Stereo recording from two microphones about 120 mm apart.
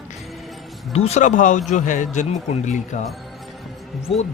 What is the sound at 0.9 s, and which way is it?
A man's voice, 65° left (ahead or behind).